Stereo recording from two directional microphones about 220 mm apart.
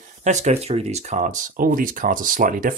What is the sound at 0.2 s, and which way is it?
Speech, 30° right (ahead or behind).